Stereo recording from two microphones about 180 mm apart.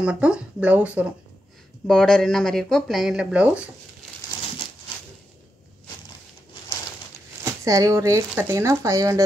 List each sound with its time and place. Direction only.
0.0 s speech: 5° right (ahead or behind)
1.9 s speech: 5° left (ahead or behind)
7.6 s speech: 20° right (ahead or behind)